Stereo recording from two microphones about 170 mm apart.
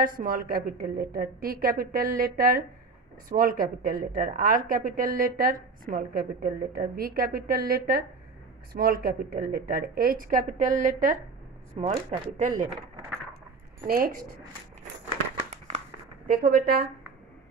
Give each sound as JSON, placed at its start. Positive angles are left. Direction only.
{"t": 0.0, "sound": "a woman's voice", "side_deg": -55}
{"t": 13.8, "sound": "a woman's voice", "side_deg": -60}
{"t": 16.3, "sound": "a woman's voice", "side_deg": -60}